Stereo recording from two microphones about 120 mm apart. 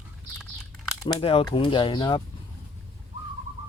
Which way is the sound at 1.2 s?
50° left (ahead or behind).